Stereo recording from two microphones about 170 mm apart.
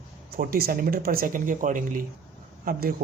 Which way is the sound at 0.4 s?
60° right (ahead or behind).